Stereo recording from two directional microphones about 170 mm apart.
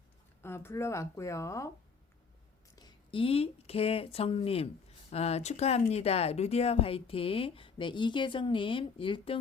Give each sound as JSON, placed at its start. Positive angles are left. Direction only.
{"t": 0.4, "sound": "speech", "side_deg": 15}
{"t": 2.7, "sound": "speech", "side_deg": 25}